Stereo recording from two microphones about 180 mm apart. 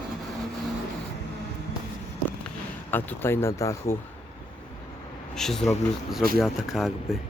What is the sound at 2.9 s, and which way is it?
Speech, 10° left (ahead or behind).